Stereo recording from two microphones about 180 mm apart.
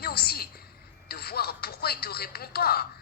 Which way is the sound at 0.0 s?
60° left (ahead or behind).